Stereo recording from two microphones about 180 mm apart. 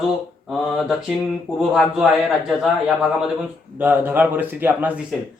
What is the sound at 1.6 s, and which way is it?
A man's voice, 5° right (ahead or behind).